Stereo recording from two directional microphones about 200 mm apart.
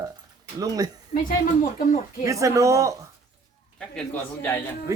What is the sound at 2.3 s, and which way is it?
Speech, 15° right (ahead or behind).